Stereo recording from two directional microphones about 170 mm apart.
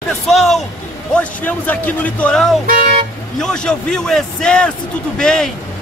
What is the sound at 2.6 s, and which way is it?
Speech, 55° right (ahead or behind).